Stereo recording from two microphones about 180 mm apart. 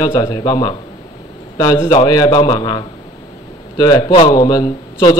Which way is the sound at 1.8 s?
20° left (ahead or behind).